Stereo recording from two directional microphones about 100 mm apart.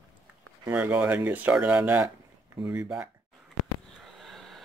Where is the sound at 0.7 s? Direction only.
20° right (ahead or behind).